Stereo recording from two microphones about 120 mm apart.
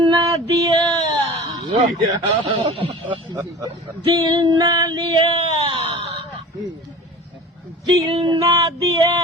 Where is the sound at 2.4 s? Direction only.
45° right (ahead or behind).